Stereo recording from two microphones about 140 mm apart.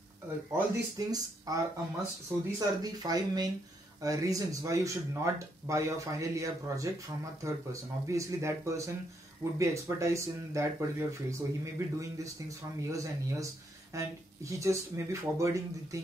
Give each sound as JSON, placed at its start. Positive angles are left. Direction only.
{"t": 0.9, "sound": "speech", "side_deg": -25}